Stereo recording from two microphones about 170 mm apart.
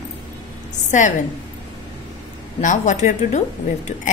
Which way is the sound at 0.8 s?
45° left (ahead or behind).